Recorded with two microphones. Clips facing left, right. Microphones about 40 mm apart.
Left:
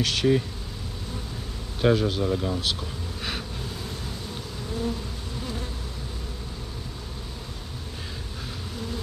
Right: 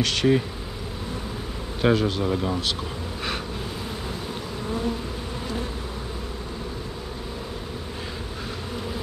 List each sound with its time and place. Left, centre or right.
0.0 s speech: centre
1.8 s speech: centre
2.2 s speech: centre